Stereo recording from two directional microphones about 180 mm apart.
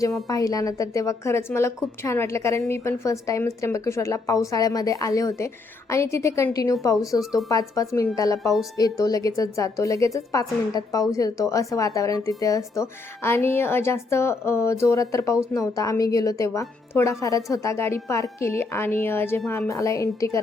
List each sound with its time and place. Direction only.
0.3 s a woman's voice: 20° left (ahead or behind)